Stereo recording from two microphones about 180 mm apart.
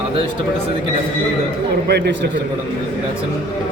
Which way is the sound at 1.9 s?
65° right (ahead or behind).